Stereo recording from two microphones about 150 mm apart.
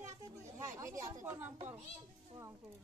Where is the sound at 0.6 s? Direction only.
20° right (ahead or behind).